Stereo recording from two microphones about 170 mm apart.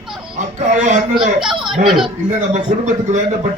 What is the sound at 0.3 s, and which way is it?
Speech, 45° right (ahead or behind).